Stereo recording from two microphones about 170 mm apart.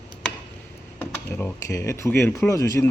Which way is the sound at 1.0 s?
15° left (ahead or behind).